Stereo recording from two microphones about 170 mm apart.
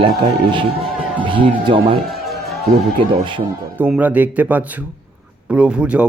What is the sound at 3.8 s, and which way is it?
Speech, 10° right (ahead or behind).